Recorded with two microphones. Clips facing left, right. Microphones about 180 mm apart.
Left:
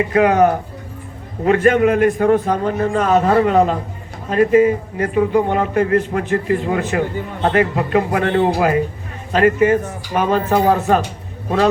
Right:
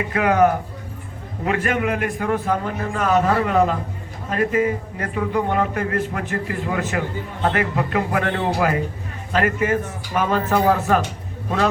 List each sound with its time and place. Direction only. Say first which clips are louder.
0.1 s a man's voice: left 2 dB; 30° left (ahead or behind)